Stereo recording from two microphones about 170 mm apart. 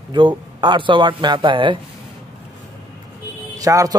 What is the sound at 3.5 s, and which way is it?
Speech, 20° right (ahead or behind).